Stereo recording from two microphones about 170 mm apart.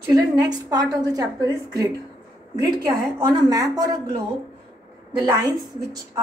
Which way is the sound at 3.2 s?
25° right (ahead or behind).